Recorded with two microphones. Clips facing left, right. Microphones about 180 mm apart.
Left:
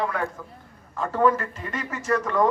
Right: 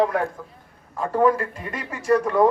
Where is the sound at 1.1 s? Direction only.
15° right (ahead or behind).